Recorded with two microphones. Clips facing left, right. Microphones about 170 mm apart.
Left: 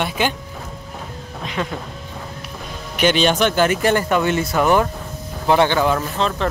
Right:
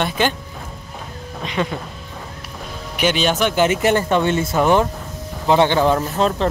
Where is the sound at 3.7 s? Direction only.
25° right (ahead or behind).